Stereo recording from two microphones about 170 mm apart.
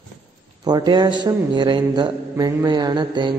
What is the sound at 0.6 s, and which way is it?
A man's voice, 25° right (ahead or behind).